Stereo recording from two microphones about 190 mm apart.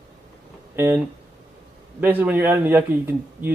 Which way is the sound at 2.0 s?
10° right (ahead or behind).